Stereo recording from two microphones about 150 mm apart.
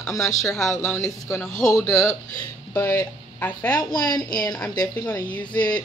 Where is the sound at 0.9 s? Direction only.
20° left (ahead or behind).